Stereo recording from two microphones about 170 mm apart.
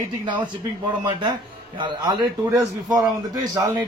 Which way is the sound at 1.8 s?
25° right (ahead or behind).